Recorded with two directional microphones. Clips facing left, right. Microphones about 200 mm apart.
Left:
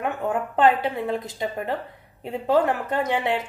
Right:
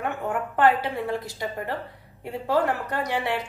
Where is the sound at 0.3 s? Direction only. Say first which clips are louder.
Left 1 dB; 20° left (ahead or behind).